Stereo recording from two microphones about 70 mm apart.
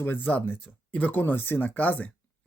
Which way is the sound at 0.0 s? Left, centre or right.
Left.